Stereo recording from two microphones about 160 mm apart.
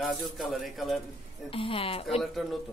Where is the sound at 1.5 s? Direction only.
35° left (ahead or behind).